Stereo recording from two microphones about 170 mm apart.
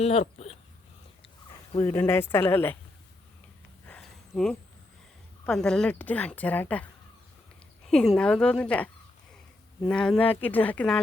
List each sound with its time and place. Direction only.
0.0 s speech: 40° left (ahead or behind)
1.7 s a woman's voice: 15° left (ahead or behind)
3.8 s a sound: 5° left (ahead or behind)
5.5 s a woman's voice: 5° left (ahead or behind)
7.9 s a woman's voice: 5° left (ahead or behind)
9.9 s a woman's voice: 5° left (ahead or behind)